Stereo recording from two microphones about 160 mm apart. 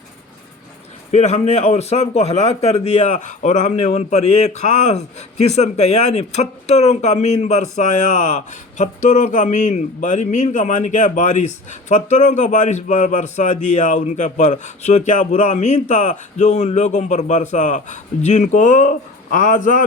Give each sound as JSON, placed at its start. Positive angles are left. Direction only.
{"t": 1.1, "sound": "a man's voice", "side_deg": 45}